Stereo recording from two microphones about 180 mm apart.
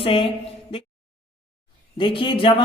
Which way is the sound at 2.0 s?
30° left (ahead or behind).